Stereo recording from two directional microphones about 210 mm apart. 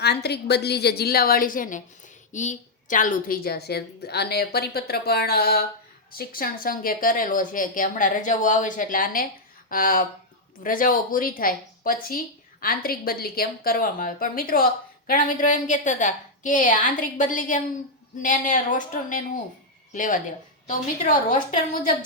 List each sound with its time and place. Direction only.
0.0 s a woman's voice: 50° left (ahead or behind)